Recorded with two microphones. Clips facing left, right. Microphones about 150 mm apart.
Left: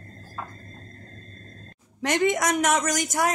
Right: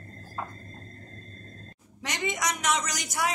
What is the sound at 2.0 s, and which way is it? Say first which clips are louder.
A woman's voice: left 8 dB; 55° left (ahead or behind).